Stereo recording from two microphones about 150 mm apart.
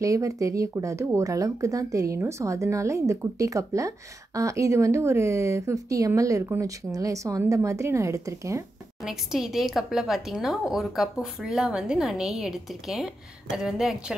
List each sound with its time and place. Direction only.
0.0 s speech: 20° right (ahead or behind)
9.0 s speech: 5° right (ahead or behind)